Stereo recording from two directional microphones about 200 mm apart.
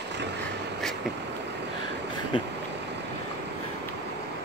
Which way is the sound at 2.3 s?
25° left (ahead or behind).